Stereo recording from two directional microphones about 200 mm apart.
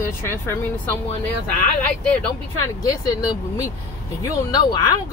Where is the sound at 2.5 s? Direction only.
20° left (ahead or behind).